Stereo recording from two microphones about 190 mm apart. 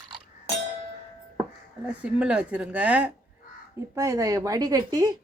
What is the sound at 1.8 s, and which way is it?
A woman's voice, 5° right (ahead or behind).